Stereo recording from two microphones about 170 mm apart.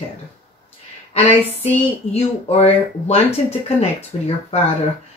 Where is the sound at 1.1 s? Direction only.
35° left (ahead or behind).